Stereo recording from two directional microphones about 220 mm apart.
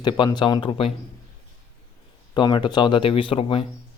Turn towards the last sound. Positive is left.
turn(degrees=25)  # may be behind; listen again after turning